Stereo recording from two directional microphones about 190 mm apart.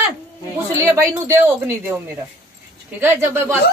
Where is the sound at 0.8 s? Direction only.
15° right (ahead or behind).